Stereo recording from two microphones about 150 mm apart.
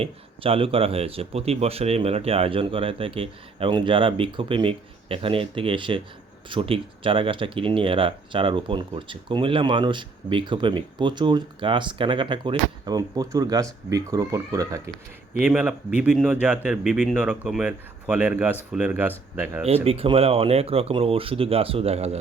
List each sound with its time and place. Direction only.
0.0 s speech: 40° right (ahead or behind); by 14.8 s 20° right (ahead or behind)
15.4 s a man's voice: 10° right (ahead or behind)
19.6 s speech: 40° right (ahead or behind)